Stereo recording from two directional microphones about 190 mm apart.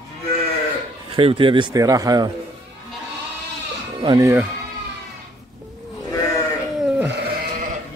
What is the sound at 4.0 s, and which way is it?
Speech, 25° right (ahead or behind).